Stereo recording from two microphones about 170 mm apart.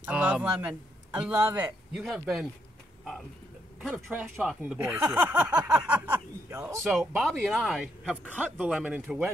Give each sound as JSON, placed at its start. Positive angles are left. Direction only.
{"t": 0.0, "sound": "a man's voice", "side_deg": -10}
{"t": 3.9, "sound": "speech", "side_deg": -10}
{"t": 6.8, "sound": "speech", "side_deg": 0}